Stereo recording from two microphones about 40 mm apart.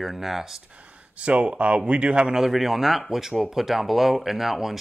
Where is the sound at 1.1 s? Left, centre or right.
Right.